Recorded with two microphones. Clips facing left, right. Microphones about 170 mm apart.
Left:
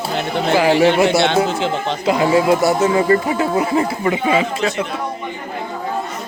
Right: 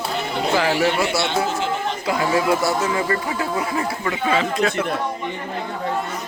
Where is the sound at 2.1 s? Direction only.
20° left (ahead or behind).